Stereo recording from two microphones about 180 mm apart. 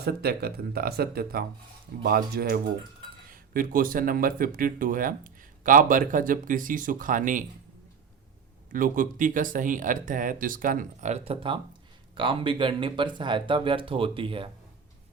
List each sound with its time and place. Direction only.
0.0 s speech: 60° right (ahead or behind)
8.7 s speech: 50° right (ahead or behind); by 14.5 s 30° right (ahead or behind)